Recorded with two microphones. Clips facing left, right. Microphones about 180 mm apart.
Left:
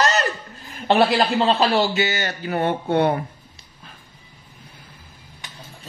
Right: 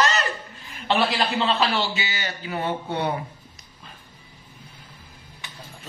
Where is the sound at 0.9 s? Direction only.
55° left (ahead or behind).